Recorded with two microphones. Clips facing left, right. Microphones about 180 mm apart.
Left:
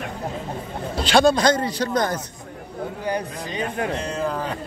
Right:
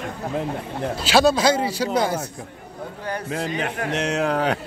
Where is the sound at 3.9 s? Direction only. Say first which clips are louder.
Right 3 dB; 75° right (ahead or behind).